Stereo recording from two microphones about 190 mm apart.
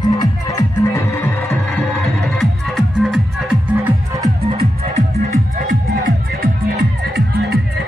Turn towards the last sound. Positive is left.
turn(degrees=-60)  # may be behind; listen again after turning